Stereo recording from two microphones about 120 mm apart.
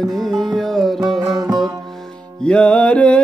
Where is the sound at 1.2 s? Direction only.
30° right (ahead or behind).